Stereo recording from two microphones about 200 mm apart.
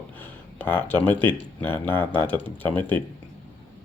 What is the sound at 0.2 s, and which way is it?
Speech, 10° left (ahead or behind).